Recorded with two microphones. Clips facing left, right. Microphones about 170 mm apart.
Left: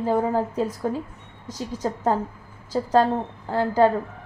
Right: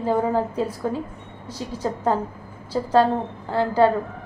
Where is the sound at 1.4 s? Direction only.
45° left (ahead or behind).